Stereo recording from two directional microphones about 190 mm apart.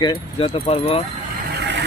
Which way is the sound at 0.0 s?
25° left (ahead or behind).